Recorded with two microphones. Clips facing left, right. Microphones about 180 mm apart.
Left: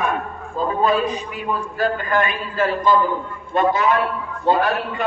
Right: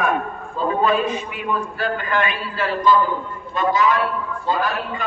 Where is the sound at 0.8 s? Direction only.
35° left (ahead or behind).